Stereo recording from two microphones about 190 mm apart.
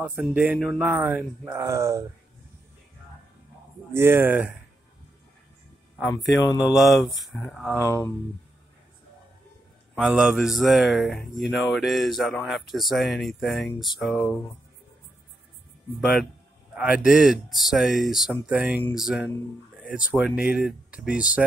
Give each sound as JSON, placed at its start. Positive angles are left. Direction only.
{"t": 0.0, "sound": "speech", "side_deg": -10}
{"t": 3.9, "sound": "speech", "side_deg": -10}
{"t": 5.9, "sound": "a man's voice", "side_deg": 10}
{"t": 6.7, "sound": "speech", "side_deg": 0}
{"t": 7.7, "sound": "speech", "side_deg": 15}
{"t": 9.9, "sound": "speech", "side_deg": -5}
{"t": 16.0, "sound": "speech", "side_deg": 0}